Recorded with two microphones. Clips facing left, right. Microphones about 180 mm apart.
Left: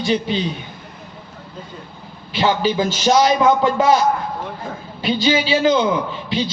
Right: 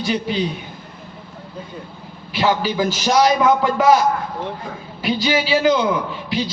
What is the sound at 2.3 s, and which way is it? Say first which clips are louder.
A man's voice: left 1 dB; 25° left (ahead or behind).